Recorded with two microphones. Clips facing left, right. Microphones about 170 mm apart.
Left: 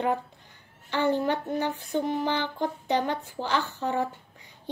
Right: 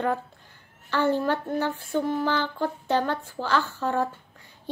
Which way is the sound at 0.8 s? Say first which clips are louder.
Right 1 dB; 15° left (ahead or behind).